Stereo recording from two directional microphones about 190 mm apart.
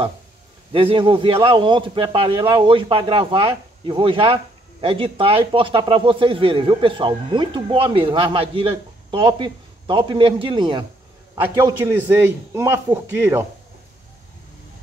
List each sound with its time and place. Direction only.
0.7 s a man's voice: 30° right (ahead or behind); by 13.5 s 10° right (ahead or behind)